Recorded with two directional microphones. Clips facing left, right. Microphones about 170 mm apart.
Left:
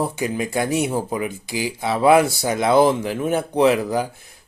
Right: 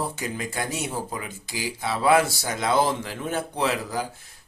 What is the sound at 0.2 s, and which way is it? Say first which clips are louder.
Speech: left 8 dB; 15° left (ahead or behind).